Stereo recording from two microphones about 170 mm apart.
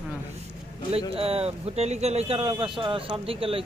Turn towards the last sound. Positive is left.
turn(degrees=-30)  # may be behind; listen again after turning